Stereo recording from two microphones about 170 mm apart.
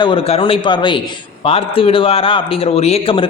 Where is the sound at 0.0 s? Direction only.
30° left (ahead or behind).